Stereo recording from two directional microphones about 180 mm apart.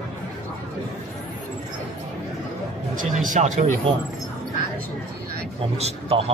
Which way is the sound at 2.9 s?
45° right (ahead or behind).